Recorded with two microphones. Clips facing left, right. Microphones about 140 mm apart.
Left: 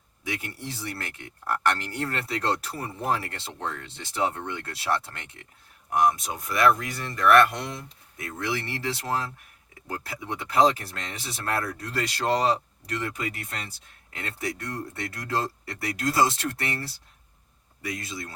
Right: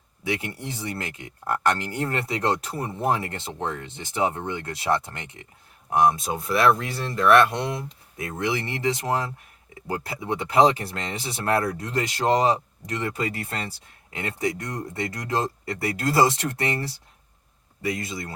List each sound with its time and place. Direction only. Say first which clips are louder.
0.3 s speech: right 5 dB; 25° right (ahead or behind)
13.1 s speech: right 5 dB; 30° right (ahead or behind)
17.8 s speech: right 6 dB; 25° right (ahead or behind)